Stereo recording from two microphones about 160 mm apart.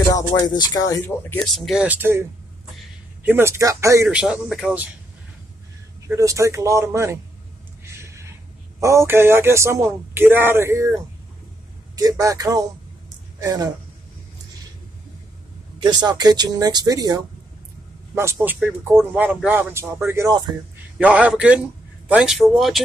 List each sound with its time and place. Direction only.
0.1 s speech: 25° left (ahead or behind)
1.4 s speech: centre (ahead or behind)
3.3 s speech: 15° right (ahead or behind)
4.1 s a man's voice: 5° right (ahead or behind)
6.0 s speech: 20° right (ahead or behind)
7.8 s a sound: 15° right (ahead or behind)
8.7 s speech: 15° right (ahead or behind)
15.8 s speech: 25° right (ahead or behind)
21.0 s a man's voice: 10° right (ahead or behind)